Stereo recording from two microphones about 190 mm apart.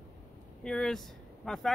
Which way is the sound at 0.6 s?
5° left (ahead or behind).